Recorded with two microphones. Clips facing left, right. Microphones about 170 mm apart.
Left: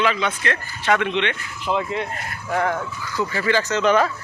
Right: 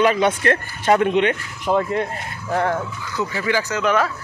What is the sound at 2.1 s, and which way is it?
Speech, 30° right (ahead or behind).